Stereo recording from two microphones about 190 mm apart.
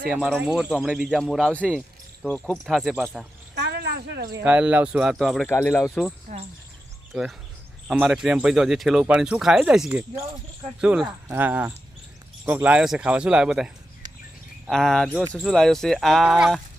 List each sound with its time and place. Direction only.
0.0 s speech: 5° right (ahead or behind)
3.5 s a sound: 60° right (ahead or behind)
4.4 s speech: 5° right (ahead or behind)
5.5 s speech: 10° left (ahead or behind); by 13.7 s 5° right (ahead or behind)
14.7 s speech: centre (ahead or behind)